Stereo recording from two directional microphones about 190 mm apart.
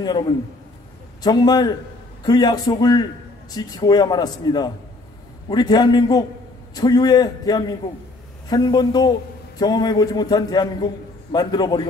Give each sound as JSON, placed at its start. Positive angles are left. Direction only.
{"t": 0.0, "sound": "a man's voice", "side_deg": 20}